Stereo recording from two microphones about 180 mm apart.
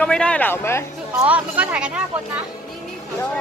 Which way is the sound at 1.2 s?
10° right (ahead or behind).